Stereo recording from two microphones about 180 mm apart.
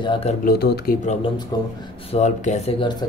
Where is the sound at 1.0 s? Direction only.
40° left (ahead or behind).